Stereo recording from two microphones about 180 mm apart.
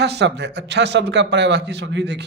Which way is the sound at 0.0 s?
70° right (ahead or behind).